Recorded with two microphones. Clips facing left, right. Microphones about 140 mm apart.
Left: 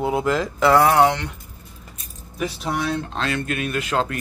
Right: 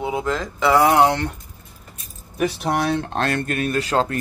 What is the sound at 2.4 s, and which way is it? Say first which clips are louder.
Speech: right 4 dB; 60° right (ahead or behind).